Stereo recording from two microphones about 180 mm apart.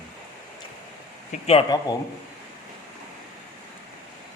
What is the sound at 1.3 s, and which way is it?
Speech, 40° left (ahead or behind).